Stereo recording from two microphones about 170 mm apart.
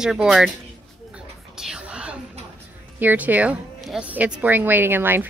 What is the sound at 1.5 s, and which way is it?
Whispering, 5° right (ahead or behind).